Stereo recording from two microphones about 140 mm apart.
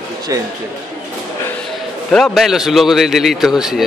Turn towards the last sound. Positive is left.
turn(degrees=-5)  # may be behind; listen again after turning